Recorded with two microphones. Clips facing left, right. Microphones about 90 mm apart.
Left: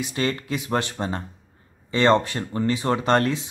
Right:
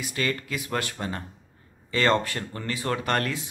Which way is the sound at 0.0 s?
25° left (ahead or behind).